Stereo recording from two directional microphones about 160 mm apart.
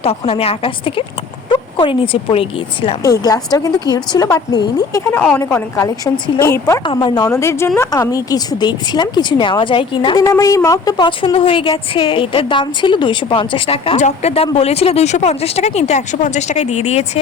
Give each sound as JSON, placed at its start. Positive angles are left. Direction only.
{"t": 0.0, "sound": "a woman's voice", "side_deg": 35}
{"t": 3.0, "sound": "a woman's voice", "side_deg": 20}
{"t": 6.8, "sound": "a woman's voice", "side_deg": 30}